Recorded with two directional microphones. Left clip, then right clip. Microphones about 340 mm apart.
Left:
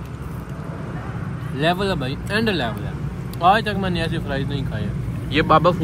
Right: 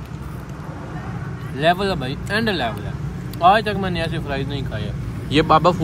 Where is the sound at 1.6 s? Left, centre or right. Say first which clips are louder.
Right 2 dB; centre.